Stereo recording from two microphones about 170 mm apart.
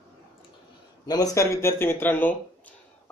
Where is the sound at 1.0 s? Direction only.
20° left (ahead or behind).